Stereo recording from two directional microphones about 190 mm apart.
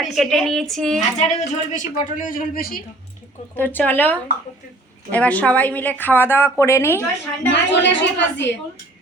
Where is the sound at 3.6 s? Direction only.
10° left (ahead or behind).